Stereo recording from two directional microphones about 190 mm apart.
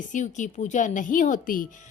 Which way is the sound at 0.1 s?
40° left (ahead or behind).